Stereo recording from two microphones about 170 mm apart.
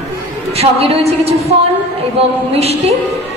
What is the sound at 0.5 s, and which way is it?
A woman's voice, 35° right (ahead or behind).